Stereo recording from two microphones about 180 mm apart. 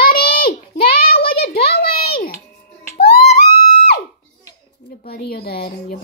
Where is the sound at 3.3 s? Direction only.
60° left (ahead or behind).